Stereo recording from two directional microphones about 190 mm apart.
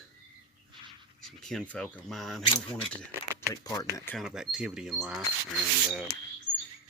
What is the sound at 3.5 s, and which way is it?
Speech, 15° left (ahead or behind).